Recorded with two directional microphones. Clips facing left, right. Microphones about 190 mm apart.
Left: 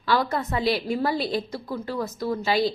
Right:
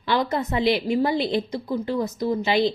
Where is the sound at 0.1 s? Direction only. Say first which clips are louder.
Right 1 dB; 20° right (ahead or behind).